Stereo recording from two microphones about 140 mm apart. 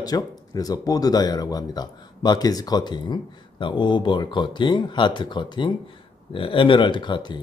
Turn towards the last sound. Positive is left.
turn(degrees=35)  # may be behind; listen again after turning